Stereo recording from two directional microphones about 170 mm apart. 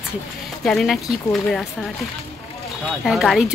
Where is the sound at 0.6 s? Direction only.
Centre (ahead or behind).